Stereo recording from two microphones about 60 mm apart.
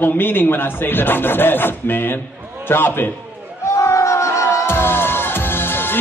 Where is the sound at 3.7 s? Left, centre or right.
Left.